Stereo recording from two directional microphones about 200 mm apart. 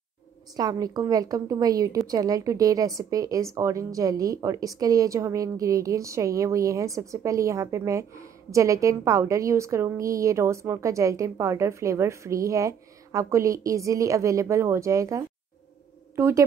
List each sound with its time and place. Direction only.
0.6 s a woman's voice: 20° right (ahead or behind)